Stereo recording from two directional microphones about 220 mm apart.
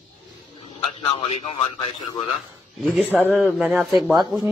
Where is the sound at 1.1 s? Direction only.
25° left (ahead or behind).